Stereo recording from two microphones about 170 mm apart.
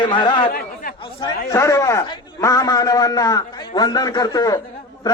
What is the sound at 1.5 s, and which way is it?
A man's voice, 20° left (ahead or behind).